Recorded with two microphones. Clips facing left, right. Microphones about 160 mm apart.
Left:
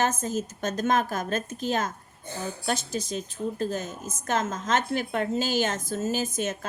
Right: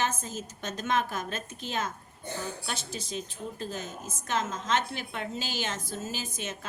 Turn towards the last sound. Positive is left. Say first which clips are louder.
# left 8 dB
turn(degrees=45)  # may be behind; listen again after turning